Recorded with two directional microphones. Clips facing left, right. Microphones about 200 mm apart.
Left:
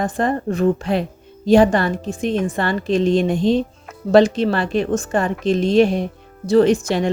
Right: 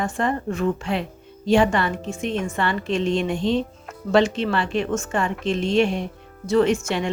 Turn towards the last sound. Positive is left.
turn(degrees=35)  # may be behind; listen again after turning